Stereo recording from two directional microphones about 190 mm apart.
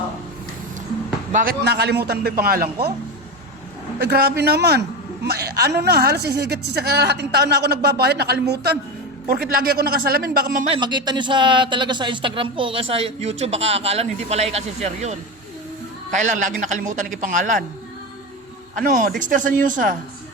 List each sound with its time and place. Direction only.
1.3 s speech: 45° right (ahead or behind)
1.6 s a man's voice: 60° right (ahead or behind)
4.0 s a man's voice: 55° right (ahead or behind)
10.7 s speech: 25° right (ahead or behind); by 17.6 s 45° right (ahead or behind)
18.8 s speech: 45° right (ahead or behind)